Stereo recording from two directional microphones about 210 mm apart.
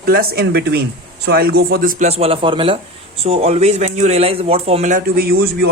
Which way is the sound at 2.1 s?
25° right (ahead or behind).